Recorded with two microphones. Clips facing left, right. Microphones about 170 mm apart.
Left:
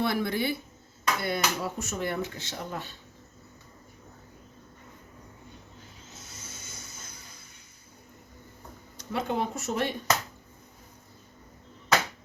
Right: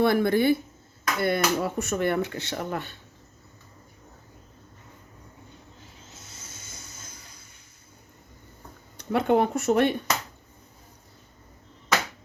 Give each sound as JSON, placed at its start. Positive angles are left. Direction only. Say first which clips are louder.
{"t": 0.0, "sound": "speech", "louder": "right 7 dB", "side_deg": -50}
{"t": 9.0, "sound": "speech", "louder": "right 8 dB", "side_deg": -60}